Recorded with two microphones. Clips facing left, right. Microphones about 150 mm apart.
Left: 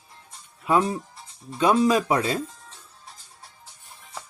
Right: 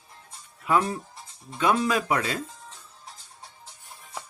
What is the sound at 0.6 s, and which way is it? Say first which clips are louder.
Speech: left 2 dB; 25° left (ahead or behind).